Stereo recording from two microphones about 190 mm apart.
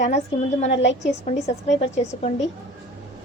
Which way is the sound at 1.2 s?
35° left (ahead or behind).